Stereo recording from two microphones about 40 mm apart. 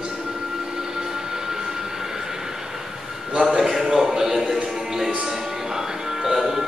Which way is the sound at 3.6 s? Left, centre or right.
Centre.